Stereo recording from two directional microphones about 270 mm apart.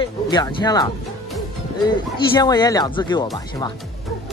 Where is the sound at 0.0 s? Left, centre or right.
Centre.